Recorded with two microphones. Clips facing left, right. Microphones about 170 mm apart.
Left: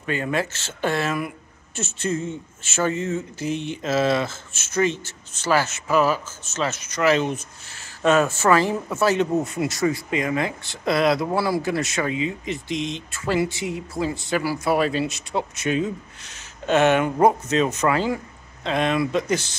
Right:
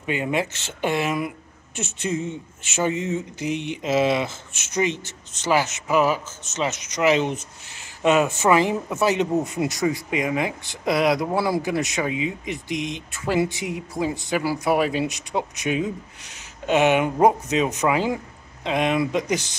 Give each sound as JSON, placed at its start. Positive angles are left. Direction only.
{"t": 0.0, "sound": "speech", "side_deg": -15}